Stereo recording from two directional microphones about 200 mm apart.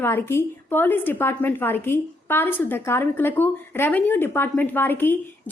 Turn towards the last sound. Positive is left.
turn(degrees=10)  # may be behind; listen again after turning